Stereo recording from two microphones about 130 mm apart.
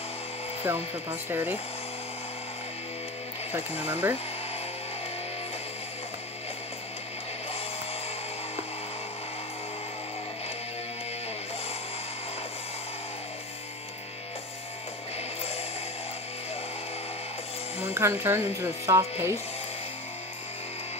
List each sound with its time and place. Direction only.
0.7 s speech: 15° right (ahead or behind)
3.8 s speech: 15° right (ahead or behind)
17.8 s speech: 15° right (ahead or behind)